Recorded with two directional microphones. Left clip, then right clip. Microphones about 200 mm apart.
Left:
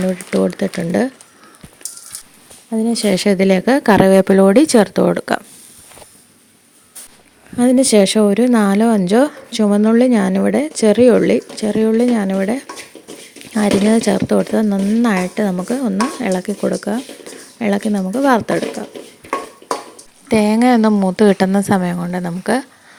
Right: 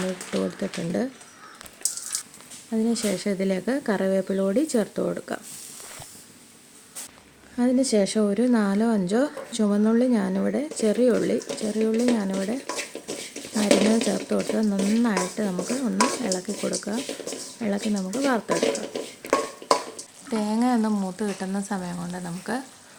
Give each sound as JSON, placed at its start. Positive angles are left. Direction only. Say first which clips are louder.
{"t": 0.3, "sound": "speech", "louder": "left 11 dB", "side_deg": 40}
{"t": 2.6, "sound": "speech", "louder": "left 9 dB", "side_deg": 35}
{"t": 7.5, "sound": "speech", "louder": "left 10 dB", "side_deg": 40}
{"t": 20.3, "sound": "speech", "louder": "left 12 dB", "side_deg": 40}